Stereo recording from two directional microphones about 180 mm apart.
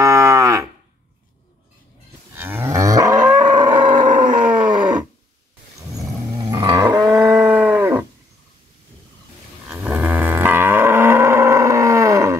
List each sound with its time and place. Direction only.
0.0 s moo: 15° right (ahead or behind)
2.3 s cattle: 10° right (ahead or behind)
3.5 s a sound: 25° right (ahead or behind)
4.1 s wild animals: 50° right (ahead or behind)
4.6 s a sound: 25° right (ahead or behind)
6.7 s livestock: 20° right (ahead or behind)
9.7 s cattle: 10° right (ahead or behind)